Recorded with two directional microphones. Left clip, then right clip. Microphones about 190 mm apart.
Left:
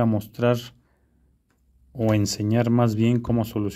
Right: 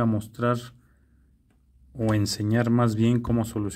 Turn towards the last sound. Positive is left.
turn(degrees=20)  # may be behind; listen again after turning